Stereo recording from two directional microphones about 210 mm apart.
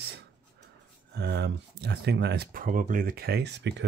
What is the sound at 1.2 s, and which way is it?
Speech, 50° right (ahead or behind).